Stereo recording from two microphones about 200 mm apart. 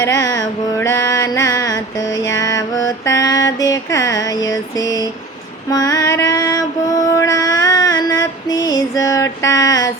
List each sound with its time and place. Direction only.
0.0 s mantra: 15° left (ahead or behind)
5.7 s music: 20° left (ahead or behind)
7.2 s female singing: 15° left (ahead or behind)